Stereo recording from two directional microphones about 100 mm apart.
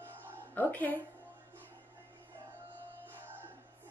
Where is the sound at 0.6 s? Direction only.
15° left (ahead or behind).